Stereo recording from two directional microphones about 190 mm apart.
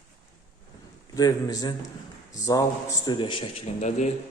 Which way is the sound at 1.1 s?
20° left (ahead or behind).